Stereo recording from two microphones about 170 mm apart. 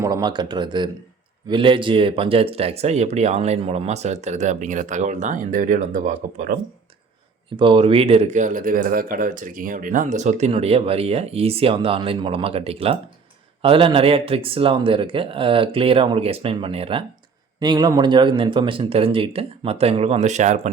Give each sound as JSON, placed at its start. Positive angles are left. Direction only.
{"t": 0.0, "sound": "speech", "side_deg": -25}
{"t": 7.5, "sound": "speech", "side_deg": -30}